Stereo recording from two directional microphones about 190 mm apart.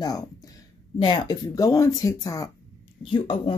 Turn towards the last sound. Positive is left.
turn(degrees=30)  # may be behind; listen again after turning